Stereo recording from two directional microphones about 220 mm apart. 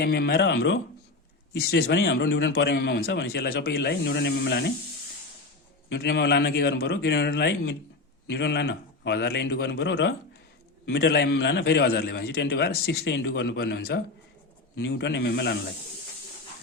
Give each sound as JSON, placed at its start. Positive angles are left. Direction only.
{"t": 0.0, "sound": "a man's voice", "side_deg": 45}
{"t": 5.9, "sound": "a man's voice", "side_deg": 50}